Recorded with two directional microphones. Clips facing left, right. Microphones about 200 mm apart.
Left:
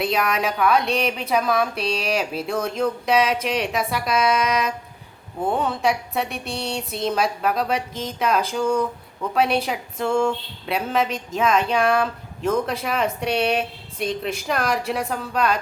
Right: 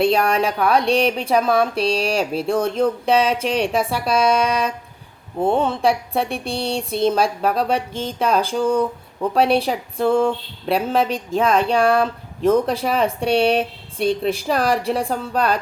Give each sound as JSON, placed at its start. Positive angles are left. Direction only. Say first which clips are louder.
{"t": 0.0, "sound": "speech", "louder": "right 5 dB", "side_deg": -30}